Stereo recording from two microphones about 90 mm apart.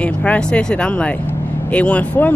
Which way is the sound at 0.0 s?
15° left (ahead or behind).